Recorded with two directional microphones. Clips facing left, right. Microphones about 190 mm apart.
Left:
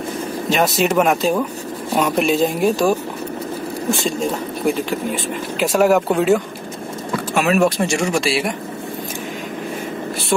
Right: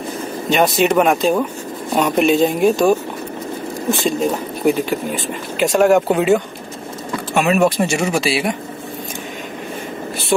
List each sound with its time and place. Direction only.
0.5 s speech: centre (ahead or behind)
3.9 s speech: centre (ahead or behind)